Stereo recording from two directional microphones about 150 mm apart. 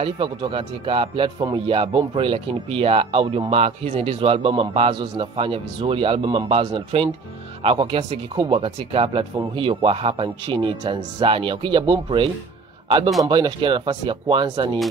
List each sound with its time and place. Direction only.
0.0 s a man's voice: 35° right (ahead or behind)